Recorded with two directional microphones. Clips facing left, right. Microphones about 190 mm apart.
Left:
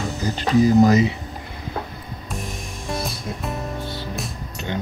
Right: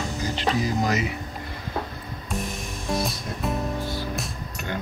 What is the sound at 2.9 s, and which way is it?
Music, centre (ahead or behind).